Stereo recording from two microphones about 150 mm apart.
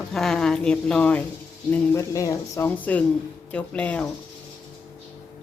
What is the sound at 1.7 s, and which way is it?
Speech, 20° left (ahead or behind).